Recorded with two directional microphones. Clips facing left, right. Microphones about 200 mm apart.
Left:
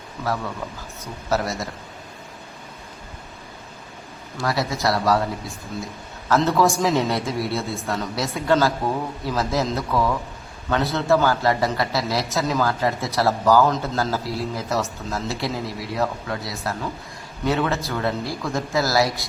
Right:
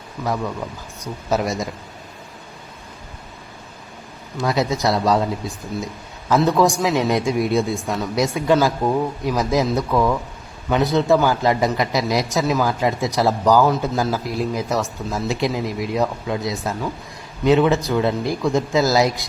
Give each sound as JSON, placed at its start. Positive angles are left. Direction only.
{"t": 1.3, "sound": "a man's voice", "side_deg": -15}
{"t": 4.4, "sound": "speech", "side_deg": -20}
{"t": 6.2, "sound": "a man's voice", "side_deg": -15}